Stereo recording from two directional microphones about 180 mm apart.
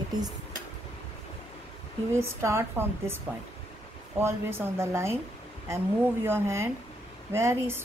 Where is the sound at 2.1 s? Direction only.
15° right (ahead or behind).